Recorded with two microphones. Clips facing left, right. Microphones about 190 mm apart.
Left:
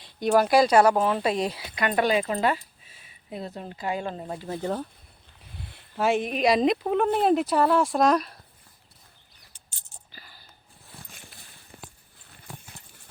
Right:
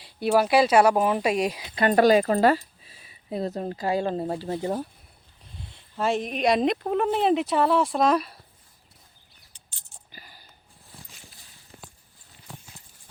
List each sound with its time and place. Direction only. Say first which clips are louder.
0.0 s speech: even; 5° right (ahead or behind)
1.7 s speech: right 6 dB; 35° right (ahead or behind)
4.6 s speech: left 2 dB; 10° right (ahead or behind)
6.0 s speech: left 2 dB; 5° left (ahead or behind)
10.1 s a sound: right 3 dB; 15° right (ahead or behind)
11.1 s a sound: left 2 dB; 60° left (ahead or behind)